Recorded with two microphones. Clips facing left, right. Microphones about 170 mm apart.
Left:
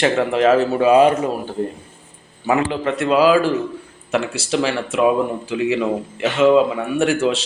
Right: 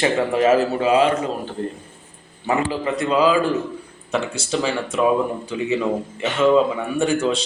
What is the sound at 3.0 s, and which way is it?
A man's voice, 10° left (ahead or behind).